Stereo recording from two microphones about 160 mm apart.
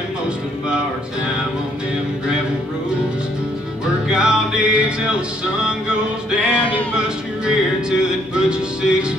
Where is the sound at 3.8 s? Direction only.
5° right (ahead or behind).